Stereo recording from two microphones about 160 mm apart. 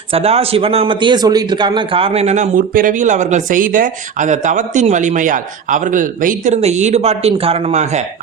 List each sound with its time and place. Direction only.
0.1 s speech: 40° right (ahead or behind)